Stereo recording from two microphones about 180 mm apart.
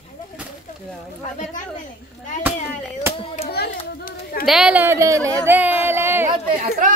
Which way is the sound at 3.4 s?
60° left (ahead or behind).